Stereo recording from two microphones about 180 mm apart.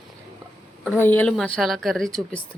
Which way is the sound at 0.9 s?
10° left (ahead or behind).